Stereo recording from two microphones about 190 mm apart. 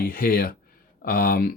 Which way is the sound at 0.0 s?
50° left (ahead or behind).